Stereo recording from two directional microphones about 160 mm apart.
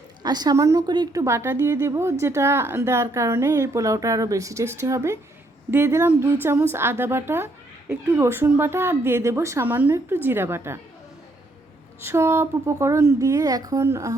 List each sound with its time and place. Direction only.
0.2 s a woman's voice: 25° right (ahead or behind)
11.9 s a woman's voice: 15° right (ahead or behind)